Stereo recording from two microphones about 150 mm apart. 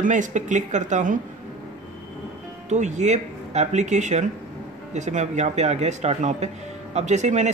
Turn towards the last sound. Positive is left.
turn(degrees=-50)  # may be behind; listen again after turning